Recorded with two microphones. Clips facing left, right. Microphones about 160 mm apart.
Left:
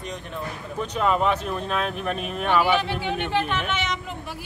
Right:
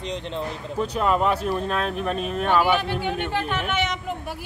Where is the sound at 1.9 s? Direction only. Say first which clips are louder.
Right 2 dB; 35° right (ahead or behind).